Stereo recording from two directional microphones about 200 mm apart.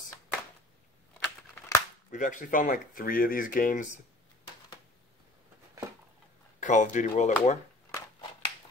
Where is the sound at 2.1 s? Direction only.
40° left (ahead or behind).